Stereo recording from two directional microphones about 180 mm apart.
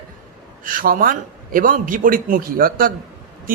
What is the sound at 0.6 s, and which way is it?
A man's voice, 50° right (ahead or behind).